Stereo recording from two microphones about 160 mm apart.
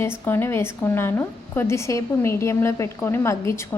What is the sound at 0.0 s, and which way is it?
A woman's voice, 15° left (ahead or behind).